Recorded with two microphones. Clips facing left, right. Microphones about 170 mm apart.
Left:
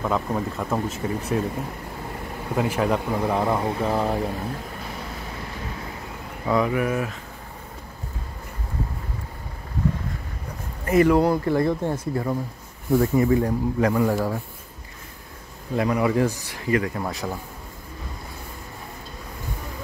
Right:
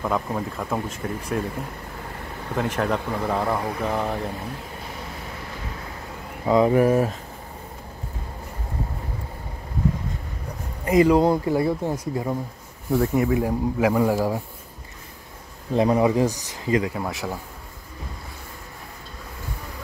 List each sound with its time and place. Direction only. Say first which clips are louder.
0.0 s speech: left 1 dB; centre (ahead or behind)
2.5 s speech: left 2 dB; 5° left (ahead or behind)
3.8 s speech: left 2 dB; 5° left (ahead or behind)
6.4 s speech: right 4 dB; 20° right (ahead or behind)
6.7 s speech: right 6 dB; 35° right (ahead or behind)
10.9 s speech: right 1 dB; 15° right (ahead or behind)
11.5 s speech: even; 5° right (ahead or behind)
12.9 s speech: left 2 dB; centre (ahead or behind)
15.7 s speech: right 3 dB; 25° right (ahead or behind)
16.9 s speech: even; centre (ahead or behind)